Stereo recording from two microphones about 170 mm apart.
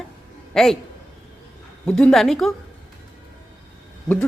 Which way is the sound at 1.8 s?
5° left (ahead or behind).